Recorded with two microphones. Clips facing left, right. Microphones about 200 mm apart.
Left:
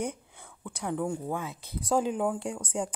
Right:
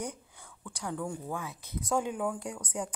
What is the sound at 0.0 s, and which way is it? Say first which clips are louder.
Speech: left 5 dB; 25° left (ahead or behind).